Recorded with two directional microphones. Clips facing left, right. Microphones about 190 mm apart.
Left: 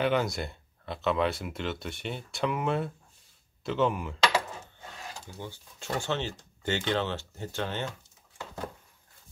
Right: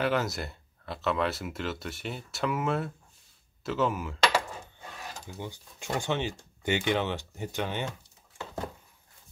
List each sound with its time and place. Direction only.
0.0 s speech: centre (ahead or behind)
5.1 s speech: 15° right (ahead or behind)